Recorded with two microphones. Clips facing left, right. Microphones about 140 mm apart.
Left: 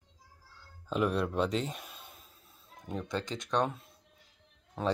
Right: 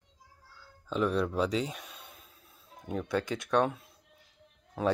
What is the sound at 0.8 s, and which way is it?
Speech, 5° left (ahead or behind).